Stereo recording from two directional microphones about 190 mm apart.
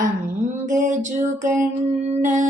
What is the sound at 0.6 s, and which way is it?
Music, 40° right (ahead or behind).